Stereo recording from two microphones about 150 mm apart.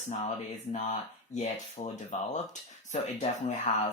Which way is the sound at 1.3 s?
50° left (ahead or behind).